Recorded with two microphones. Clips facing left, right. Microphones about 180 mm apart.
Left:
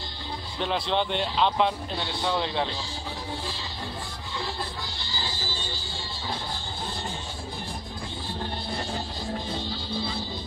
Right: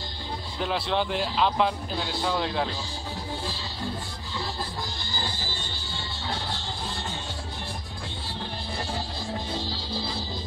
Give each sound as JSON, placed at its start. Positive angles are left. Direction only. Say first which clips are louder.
{"t": 0.6, "sound": "speech", "louder": "even", "side_deg": -5}